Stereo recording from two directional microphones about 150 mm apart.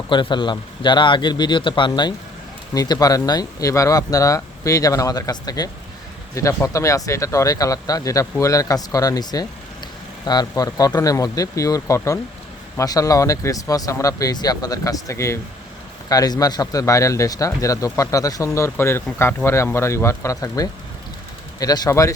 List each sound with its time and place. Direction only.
0.1 s a man's voice: 30° left (ahead or behind)